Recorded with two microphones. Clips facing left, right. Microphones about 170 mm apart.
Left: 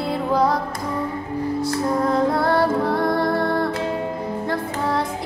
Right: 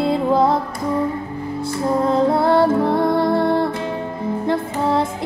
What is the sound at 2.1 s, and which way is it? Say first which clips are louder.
Music: right 5 dB; 25° right (ahead or behind).